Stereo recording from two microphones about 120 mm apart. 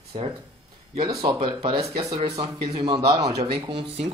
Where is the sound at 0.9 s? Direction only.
40° right (ahead or behind).